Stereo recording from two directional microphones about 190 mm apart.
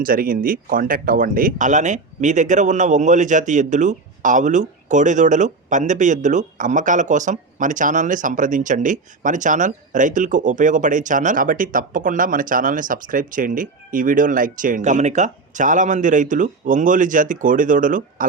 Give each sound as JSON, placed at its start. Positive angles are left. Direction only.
{"t": 0.0, "sound": "speech", "side_deg": -50}